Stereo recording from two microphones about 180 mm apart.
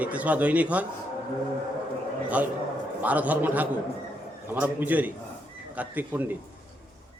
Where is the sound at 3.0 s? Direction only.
10° right (ahead or behind).